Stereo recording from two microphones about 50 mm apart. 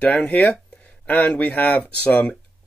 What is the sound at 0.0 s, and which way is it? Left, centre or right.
A man's voice, left.